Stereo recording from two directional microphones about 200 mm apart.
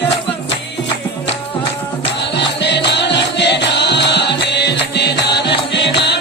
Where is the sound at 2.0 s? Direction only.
60° left (ahead or behind).